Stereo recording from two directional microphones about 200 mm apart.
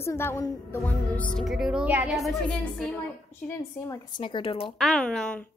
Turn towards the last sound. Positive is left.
turn(degrees=5)  # may be behind; listen again after turning